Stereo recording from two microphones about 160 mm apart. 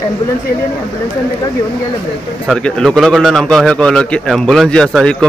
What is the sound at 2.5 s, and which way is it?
A man's voice, 5° left (ahead or behind).